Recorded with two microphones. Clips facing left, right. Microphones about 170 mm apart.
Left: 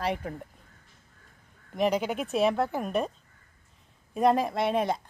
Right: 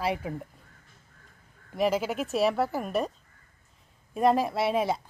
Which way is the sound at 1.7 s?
5° right (ahead or behind).